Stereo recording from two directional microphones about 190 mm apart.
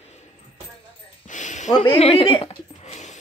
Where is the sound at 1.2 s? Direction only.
40° left (ahead or behind).